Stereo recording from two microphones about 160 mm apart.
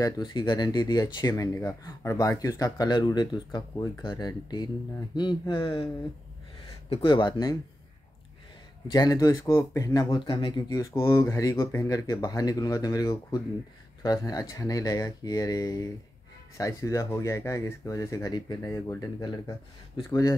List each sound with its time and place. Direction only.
0.0 s speech: 25° left (ahead or behind)
6.9 s speech: 35° left (ahead or behind)
8.9 s speech: 25° left (ahead or behind)